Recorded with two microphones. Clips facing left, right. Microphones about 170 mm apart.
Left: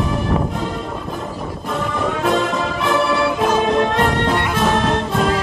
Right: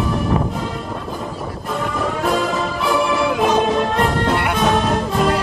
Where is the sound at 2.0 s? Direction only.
Centre (ahead or behind).